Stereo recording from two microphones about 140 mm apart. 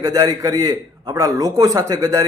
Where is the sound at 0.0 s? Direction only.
25° right (ahead or behind).